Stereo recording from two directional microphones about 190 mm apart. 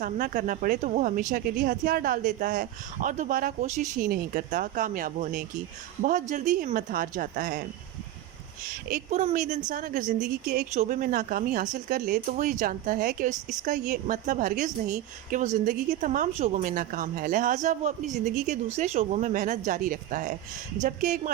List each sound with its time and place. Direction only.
0.0 s a woman's voice: 45° right (ahead or behind)
8.9 s a woman's voice: 35° right (ahead or behind)